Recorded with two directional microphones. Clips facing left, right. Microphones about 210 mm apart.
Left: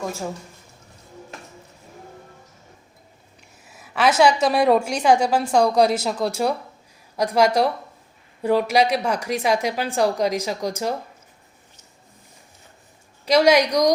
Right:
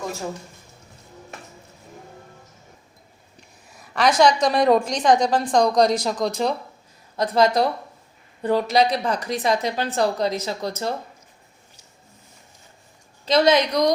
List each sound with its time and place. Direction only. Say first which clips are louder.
3.7 s a woman's voice: even; 5° left (ahead or behind)
13.2 s a woman's voice: left 2 dB; 10° left (ahead or behind)